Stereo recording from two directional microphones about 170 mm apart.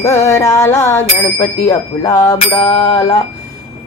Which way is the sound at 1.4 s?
20° left (ahead or behind).